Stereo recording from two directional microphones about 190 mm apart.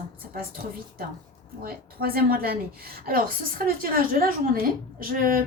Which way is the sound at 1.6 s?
50° right (ahead or behind).